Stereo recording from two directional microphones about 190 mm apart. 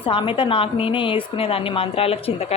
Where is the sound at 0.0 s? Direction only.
25° left (ahead or behind).